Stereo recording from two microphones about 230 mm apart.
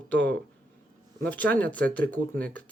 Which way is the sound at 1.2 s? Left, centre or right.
Centre.